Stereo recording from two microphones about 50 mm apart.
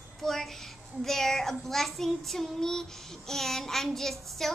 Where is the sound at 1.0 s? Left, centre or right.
Centre.